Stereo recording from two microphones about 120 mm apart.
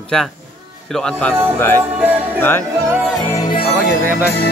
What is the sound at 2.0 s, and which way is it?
Music, 15° right (ahead or behind).